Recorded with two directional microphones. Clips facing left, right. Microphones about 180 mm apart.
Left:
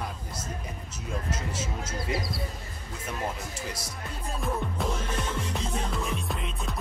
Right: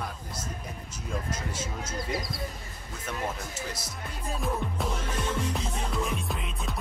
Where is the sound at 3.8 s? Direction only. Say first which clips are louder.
Left 1 dB; 5° right (ahead or behind).